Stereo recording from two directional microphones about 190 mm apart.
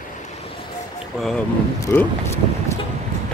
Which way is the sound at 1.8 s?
15° left (ahead or behind).